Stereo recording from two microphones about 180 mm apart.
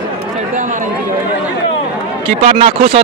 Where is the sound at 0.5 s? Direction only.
45° right (ahead or behind).